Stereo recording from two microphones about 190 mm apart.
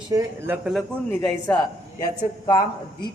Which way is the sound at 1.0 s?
5° left (ahead or behind).